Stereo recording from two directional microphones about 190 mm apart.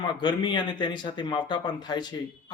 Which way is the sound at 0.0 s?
25° left (ahead or behind).